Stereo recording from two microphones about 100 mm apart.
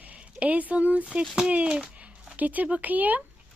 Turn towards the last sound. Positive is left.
turn(degrees=-15)  # may be behind; listen again after turning